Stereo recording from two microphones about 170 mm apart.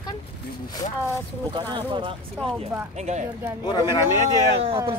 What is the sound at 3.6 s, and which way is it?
Speech, 25° left (ahead or behind).